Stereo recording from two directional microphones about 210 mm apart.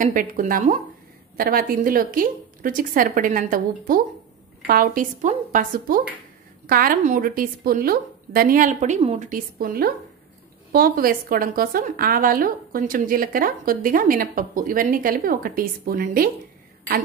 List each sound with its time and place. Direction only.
0.0 s a woman's voice: 40° right (ahead or behind)